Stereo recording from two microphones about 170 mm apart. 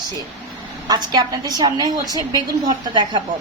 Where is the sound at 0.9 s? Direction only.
25° right (ahead or behind).